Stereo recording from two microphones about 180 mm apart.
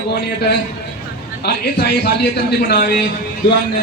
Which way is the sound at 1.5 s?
65° left (ahead or behind).